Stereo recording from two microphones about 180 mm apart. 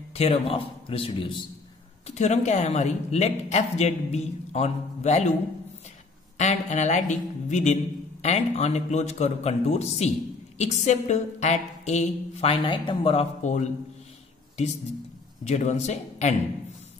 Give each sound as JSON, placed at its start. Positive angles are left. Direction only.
{"t": 0.1, "sound": "a man's voice", "side_deg": 35}
{"t": 6.3, "sound": "a man's voice", "side_deg": 40}
{"t": 15.4, "sound": "a man's voice", "side_deg": 40}